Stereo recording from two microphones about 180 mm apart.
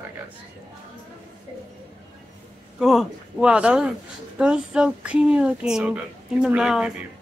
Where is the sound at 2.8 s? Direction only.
Centre (ahead or behind).